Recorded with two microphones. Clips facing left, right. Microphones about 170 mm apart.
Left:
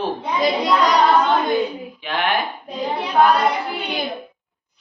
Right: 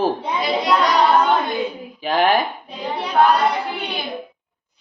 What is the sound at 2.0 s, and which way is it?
Speech, 40° right (ahead or behind).